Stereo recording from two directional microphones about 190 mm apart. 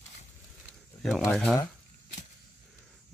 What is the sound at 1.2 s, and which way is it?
Speech, 10° left (ahead or behind).